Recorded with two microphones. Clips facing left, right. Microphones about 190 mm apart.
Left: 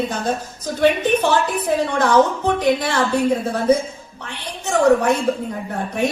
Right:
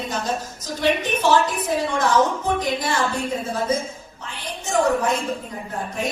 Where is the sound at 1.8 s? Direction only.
60° left (ahead or behind).